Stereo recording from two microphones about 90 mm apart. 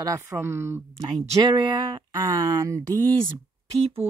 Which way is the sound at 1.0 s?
55° right (ahead or behind).